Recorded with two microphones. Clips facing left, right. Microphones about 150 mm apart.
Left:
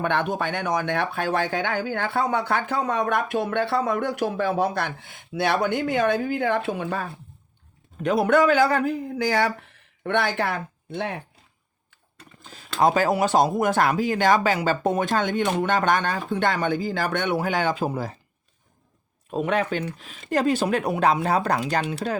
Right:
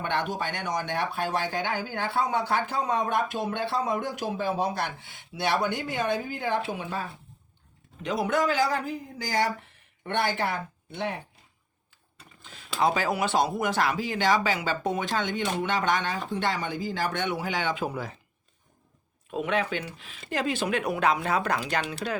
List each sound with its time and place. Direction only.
0.0 s speech: 55° left (ahead or behind)
12.4 s speech: 40° left (ahead or behind)
19.3 s speech: 40° left (ahead or behind)